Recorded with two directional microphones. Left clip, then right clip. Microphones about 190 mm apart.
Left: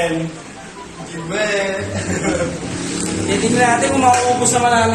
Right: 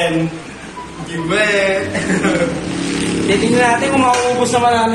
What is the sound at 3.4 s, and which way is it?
Speech, 30° right (ahead or behind).